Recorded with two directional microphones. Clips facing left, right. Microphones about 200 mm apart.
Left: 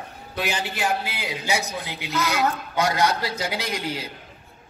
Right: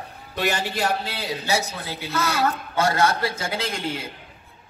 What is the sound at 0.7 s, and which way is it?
A man's voice, 5° left (ahead or behind).